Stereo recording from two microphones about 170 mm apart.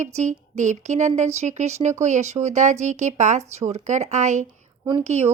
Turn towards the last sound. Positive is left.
turn(degrees=-40)  # may be behind; listen again after turning